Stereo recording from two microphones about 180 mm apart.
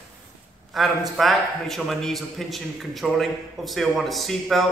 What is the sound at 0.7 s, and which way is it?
A man's voice, centre (ahead or behind).